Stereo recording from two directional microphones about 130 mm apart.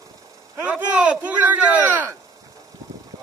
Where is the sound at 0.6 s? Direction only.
10° right (ahead or behind).